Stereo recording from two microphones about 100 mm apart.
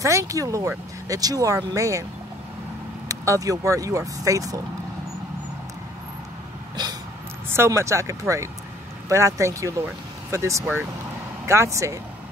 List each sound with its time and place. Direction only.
0.0 s speech: 30° right (ahead or behind)
3.1 s speech: 35° right (ahead or behind)
6.8 s a sound: 45° right (ahead or behind)
7.4 s speech: 25° right (ahead or behind)